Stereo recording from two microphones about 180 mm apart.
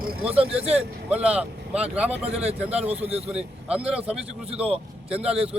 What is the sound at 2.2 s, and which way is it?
Speech, 35° right (ahead or behind).